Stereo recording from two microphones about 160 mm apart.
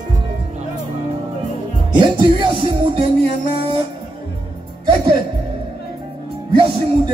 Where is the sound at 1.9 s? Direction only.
30° right (ahead or behind).